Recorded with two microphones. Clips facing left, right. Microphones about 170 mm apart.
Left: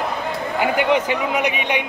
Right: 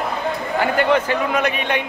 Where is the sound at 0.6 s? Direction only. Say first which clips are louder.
Right 1 dB; 15° left (ahead or behind).